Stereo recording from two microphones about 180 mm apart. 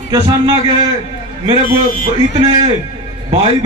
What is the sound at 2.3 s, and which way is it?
Speech, 30° right (ahead or behind).